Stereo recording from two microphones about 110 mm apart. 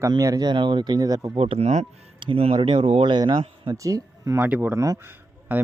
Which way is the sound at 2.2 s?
55° right (ahead or behind).